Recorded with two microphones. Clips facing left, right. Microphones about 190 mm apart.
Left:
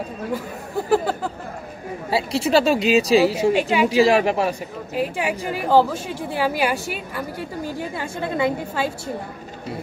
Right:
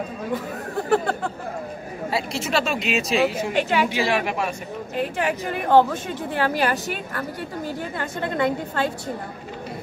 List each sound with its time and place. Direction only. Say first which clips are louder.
0.8 s speech: left 1 dB; 5° left (ahead or behind)
2.0 s speech: left 5 dB; 30° left (ahead or behind)
3.5 s a woman's voice: left 2 dB; 10° left (ahead or behind)
3.9 s speech: left 7 dB; 35° left (ahead or behind)
4.9 s a woman's voice: left 1 dB; 10° left (ahead or behind)